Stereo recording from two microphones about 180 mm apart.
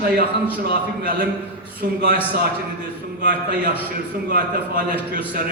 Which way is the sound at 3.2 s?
50° right (ahead or behind).